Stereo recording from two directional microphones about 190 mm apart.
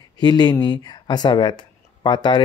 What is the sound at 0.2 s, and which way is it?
Speech, 20° left (ahead or behind).